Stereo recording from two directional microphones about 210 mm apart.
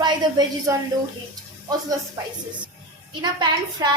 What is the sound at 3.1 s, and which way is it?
Speech, 20° right (ahead or behind).